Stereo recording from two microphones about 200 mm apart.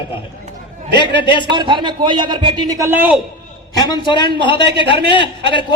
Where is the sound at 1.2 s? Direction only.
25° left (ahead or behind).